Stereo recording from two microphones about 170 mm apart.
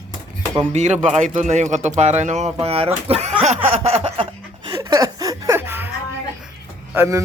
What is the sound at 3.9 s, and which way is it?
Chuckle, 35° right (ahead or behind).